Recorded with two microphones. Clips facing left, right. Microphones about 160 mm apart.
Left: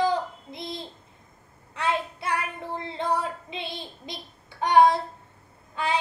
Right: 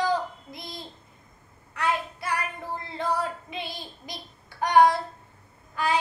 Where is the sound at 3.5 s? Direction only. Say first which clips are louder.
Even; 25° left (ahead or behind).